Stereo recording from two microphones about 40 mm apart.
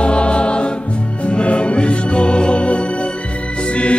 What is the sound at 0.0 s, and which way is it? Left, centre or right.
Music, left.